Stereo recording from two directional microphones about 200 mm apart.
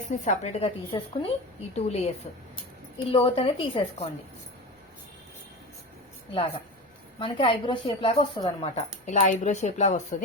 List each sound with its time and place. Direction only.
0.1 s a woman's voice: 35° left (ahead or behind)
3.1 s a woman's voice: 25° left (ahead or behind)
7.2 s a woman's voice: 25° left (ahead or behind)